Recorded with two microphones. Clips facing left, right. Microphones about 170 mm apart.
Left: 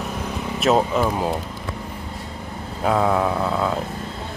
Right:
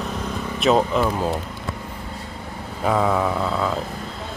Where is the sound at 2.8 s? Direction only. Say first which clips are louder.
Left 1 dB; 5° left (ahead or behind).